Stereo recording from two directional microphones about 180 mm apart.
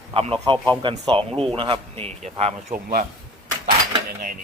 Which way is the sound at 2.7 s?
55° right (ahead or behind).